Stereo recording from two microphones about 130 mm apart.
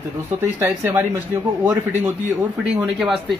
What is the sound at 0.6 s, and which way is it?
Speech, 15° right (ahead or behind).